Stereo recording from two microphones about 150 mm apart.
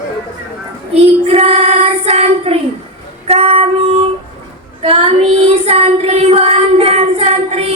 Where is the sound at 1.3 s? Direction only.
45° right (ahead or behind).